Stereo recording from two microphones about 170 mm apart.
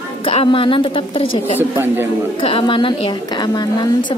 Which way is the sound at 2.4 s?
30° left (ahead or behind).